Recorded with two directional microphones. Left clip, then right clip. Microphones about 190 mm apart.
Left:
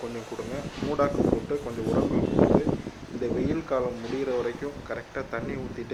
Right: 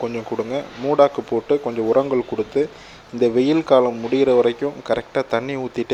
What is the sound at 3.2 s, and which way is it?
A man's voice, 35° right (ahead or behind).